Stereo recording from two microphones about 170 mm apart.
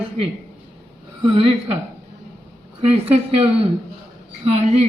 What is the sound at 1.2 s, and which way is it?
Speech, 30° right (ahead or behind).